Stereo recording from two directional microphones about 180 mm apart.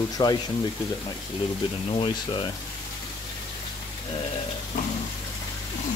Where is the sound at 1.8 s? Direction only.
30° left (ahead or behind).